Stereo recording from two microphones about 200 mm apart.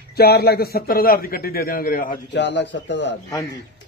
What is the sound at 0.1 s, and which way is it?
A man's voice, 50° left (ahead or behind).